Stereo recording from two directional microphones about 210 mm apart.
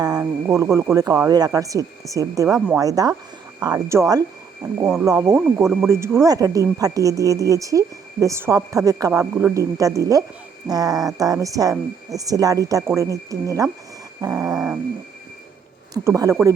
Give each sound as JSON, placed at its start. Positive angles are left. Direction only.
{"t": 0.0, "sound": "speech", "side_deg": -15}
{"t": 4.8, "sound": "speech", "side_deg": -5}
{"t": 5.0, "sound": "speech", "side_deg": -15}
{"t": 14.2, "sound": "a sound", "side_deg": -15}
{"t": 16.0, "sound": "speech", "side_deg": -15}